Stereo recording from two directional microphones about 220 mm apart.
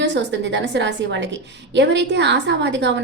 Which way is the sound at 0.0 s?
55° right (ahead or behind).